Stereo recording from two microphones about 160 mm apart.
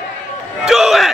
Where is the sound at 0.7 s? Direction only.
5° right (ahead or behind).